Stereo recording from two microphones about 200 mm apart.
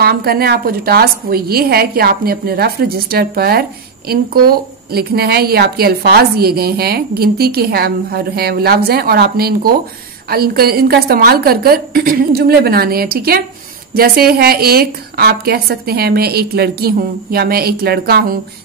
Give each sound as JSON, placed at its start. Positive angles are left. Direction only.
{"t": 0.0, "sound": "a woman's voice", "side_deg": -50}